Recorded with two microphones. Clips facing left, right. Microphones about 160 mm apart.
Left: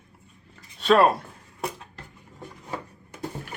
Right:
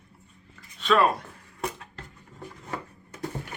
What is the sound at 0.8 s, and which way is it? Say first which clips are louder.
Speech: left 4 dB; 35° left (ahead or behind).